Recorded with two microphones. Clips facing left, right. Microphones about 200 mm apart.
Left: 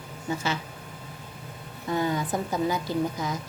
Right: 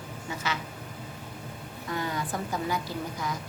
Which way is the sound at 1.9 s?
25° left (ahead or behind).